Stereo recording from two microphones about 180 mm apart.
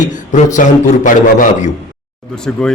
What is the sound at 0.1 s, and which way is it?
A man's voice, 45° left (ahead or behind).